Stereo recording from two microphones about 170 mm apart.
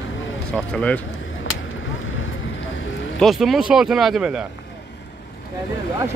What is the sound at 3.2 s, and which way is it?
Speech, centre (ahead or behind).